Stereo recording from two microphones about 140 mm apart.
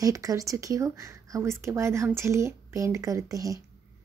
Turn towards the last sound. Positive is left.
turn(degrees=-25)  # may be behind; listen again after turning